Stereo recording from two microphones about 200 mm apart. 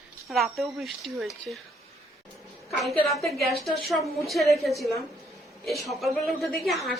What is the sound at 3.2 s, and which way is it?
A woman's voice, centre (ahead or behind).